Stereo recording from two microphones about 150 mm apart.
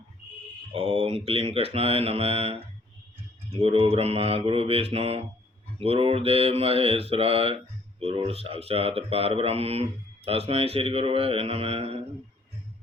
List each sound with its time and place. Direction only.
0.7 s mantra: 40° right (ahead or behind)